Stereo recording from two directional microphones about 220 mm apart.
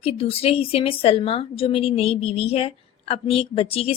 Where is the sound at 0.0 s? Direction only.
25° left (ahead or behind).